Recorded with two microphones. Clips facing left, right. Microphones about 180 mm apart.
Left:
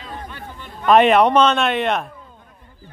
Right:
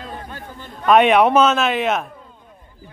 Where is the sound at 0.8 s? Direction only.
Centre (ahead or behind).